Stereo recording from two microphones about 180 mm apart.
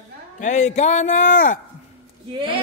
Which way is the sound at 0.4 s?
40° left (ahead or behind).